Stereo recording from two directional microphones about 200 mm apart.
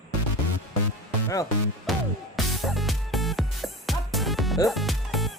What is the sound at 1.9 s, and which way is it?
Music, centre (ahead or behind).